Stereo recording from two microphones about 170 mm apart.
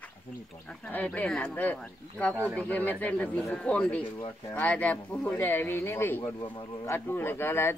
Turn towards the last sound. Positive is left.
turn(degrees=15)  # may be behind; listen again after turning